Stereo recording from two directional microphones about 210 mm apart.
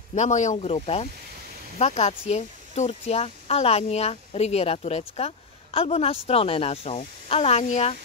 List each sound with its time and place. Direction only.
0.1 s speech: 35° left (ahead or behind)